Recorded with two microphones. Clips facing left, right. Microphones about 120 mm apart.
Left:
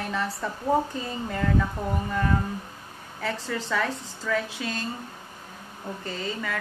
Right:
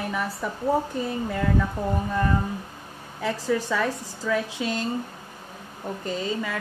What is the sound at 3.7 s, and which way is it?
Speech, 10° right (ahead or behind).